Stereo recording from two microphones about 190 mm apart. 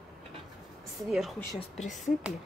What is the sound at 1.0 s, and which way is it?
Speech, centre (ahead or behind).